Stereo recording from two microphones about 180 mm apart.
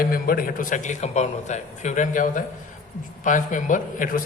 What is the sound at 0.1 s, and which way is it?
A man's voice, 55° left (ahead or behind).